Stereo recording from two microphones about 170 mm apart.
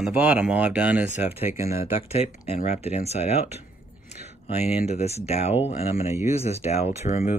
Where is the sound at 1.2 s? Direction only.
35° left (ahead or behind).